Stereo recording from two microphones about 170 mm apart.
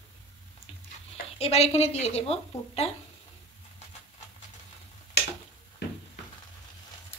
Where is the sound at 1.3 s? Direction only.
35° left (ahead or behind).